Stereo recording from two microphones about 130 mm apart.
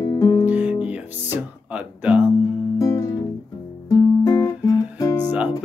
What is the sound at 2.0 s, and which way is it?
Music, 10° right (ahead or behind).